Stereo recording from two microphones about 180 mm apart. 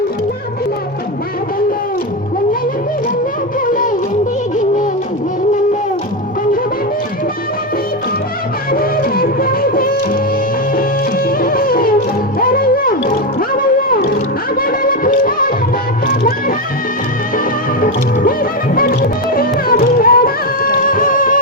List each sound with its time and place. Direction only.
8.7 s music: 55° left (ahead or behind)